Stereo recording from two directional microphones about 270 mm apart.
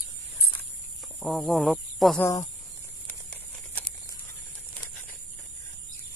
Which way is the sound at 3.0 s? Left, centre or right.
Centre.